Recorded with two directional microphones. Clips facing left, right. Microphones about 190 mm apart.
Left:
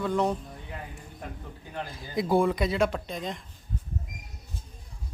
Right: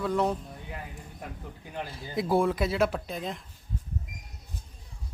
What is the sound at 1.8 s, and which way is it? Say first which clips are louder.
A man's voice: left 1 dB; centre (ahead or behind).